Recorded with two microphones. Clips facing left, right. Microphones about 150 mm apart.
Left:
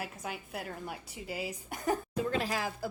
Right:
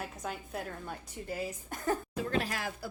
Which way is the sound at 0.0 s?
5° left (ahead or behind).